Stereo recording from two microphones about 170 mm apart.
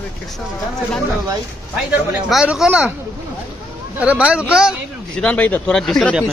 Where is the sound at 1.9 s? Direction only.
5° right (ahead or behind).